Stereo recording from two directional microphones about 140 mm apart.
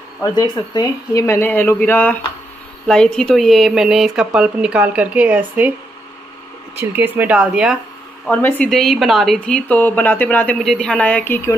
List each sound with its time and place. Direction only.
0.2 s speech: 30° left (ahead or behind); by 5.4 s 10° right (ahead or behind)
6.8 s speech: 15° right (ahead or behind)
8.3 s speech: 15° left (ahead or behind)
8.6 s speech: centre (ahead or behind)